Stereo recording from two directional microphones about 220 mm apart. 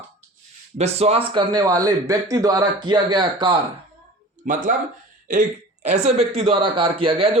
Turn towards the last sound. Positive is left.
turn(degrees=-25)  # may be behind; listen again after turning